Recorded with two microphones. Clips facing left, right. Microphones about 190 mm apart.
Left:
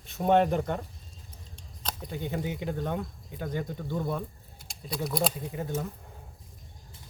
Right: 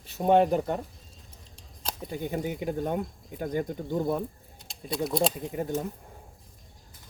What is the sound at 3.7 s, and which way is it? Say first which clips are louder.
Speech: right 4 dB; 20° right (ahead or behind).